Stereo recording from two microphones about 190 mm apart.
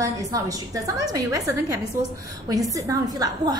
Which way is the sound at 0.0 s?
20° right (ahead or behind).